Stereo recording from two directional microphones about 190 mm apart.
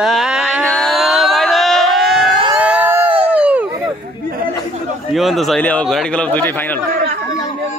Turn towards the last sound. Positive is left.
turn(degrees=10)  # may be behind; listen again after turning